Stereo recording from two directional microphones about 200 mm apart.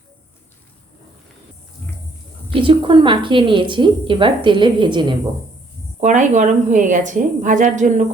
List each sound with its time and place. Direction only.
2.5 s a woman's voice: 25° right (ahead or behind)
6.0 s a woman's voice: 35° right (ahead or behind)